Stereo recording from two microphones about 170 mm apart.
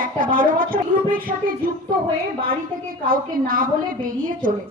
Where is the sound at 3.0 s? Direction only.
55° right (ahead or behind).